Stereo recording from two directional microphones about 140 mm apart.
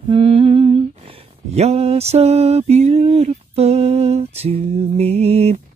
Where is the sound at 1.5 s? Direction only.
50° right (ahead or behind).